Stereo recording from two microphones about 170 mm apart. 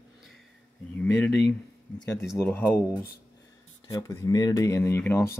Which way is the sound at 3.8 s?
20° left (ahead or behind).